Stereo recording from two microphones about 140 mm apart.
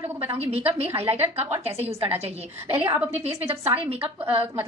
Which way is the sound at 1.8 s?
45° right (ahead or behind).